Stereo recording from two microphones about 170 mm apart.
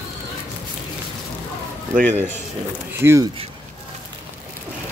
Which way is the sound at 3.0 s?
15° right (ahead or behind).